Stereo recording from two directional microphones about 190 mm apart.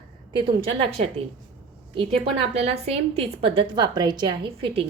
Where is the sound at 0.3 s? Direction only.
30° right (ahead or behind).